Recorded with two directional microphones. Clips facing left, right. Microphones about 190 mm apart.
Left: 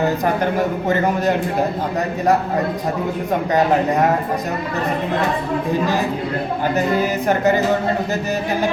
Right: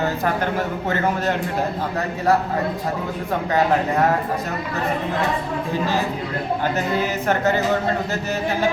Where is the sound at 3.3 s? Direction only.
15° left (ahead or behind).